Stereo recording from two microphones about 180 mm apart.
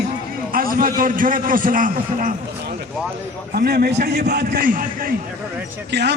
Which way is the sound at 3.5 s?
60° right (ahead or behind).